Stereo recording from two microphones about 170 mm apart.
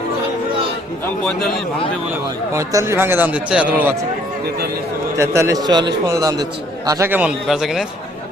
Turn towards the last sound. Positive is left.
turn(degrees=0)  # may be behind; listen again after turning